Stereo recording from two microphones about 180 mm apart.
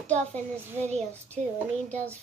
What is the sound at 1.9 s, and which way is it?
Speech, 10° left (ahead or behind).